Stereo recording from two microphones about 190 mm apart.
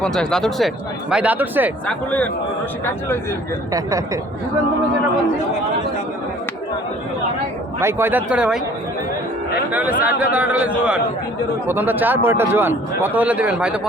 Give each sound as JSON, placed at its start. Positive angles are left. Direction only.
{"t": 0.0, "sound": "speech", "side_deg": 5}
{"t": 1.1, "sound": "a man's voice", "side_deg": -10}
{"t": 1.9, "sound": "speech", "side_deg": 5}
{"t": 3.7, "sound": "a man's voice", "side_deg": -20}
{"t": 7.8, "sound": "a man's voice", "side_deg": -15}
{"t": 9.7, "sound": "a man's voice", "side_deg": -10}